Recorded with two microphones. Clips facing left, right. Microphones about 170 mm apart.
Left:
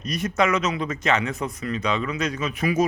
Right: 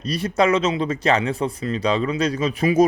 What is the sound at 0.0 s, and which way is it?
Speech, 30° right (ahead or behind).